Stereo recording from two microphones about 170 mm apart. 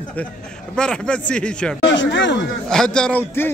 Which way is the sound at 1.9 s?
90° left.